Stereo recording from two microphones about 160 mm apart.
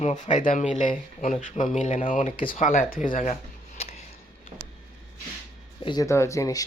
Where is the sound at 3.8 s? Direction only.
40° left (ahead or behind).